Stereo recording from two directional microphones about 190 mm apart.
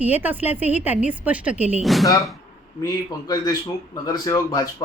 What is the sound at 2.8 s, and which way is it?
Speech, 20° left (ahead or behind).